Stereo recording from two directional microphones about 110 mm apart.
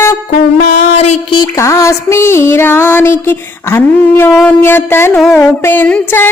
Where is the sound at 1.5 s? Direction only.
30° left (ahead or behind).